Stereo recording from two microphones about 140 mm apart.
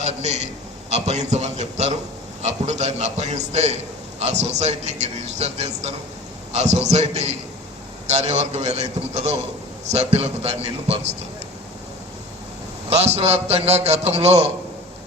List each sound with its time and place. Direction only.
0.0 s a man's voice: 55° right (ahead or behind)
12.9 s a man's voice: 50° right (ahead or behind)